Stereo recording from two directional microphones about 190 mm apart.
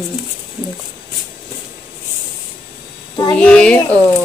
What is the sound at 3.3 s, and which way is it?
Speech, 5° left (ahead or behind).